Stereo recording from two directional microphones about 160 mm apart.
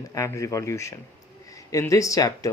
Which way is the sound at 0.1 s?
20° left (ahead or behind).